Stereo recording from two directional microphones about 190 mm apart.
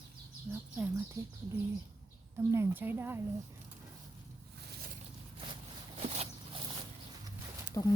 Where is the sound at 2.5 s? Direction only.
10° right (ahead or behind).